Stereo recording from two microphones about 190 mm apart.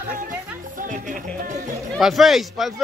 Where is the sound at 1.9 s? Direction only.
Centre (ahead or behind).